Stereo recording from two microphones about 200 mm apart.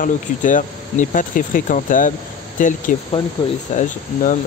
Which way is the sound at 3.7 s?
40° left (ahead or behind).